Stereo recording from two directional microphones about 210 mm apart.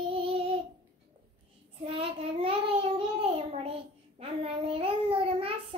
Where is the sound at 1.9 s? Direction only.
25° right (ahead or behind).